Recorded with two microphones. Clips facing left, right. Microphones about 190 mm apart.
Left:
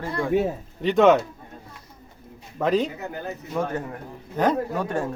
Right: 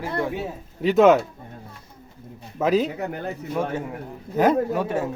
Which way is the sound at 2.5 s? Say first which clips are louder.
Right 2 dB; 5° right (ahead or behind).